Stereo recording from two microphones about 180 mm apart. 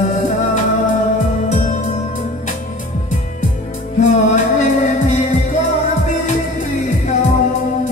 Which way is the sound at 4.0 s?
40° left (ahead or behind).